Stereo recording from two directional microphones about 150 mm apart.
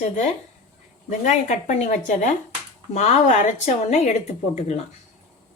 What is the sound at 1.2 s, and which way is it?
A woman's voice, 50° left (ahead or behind).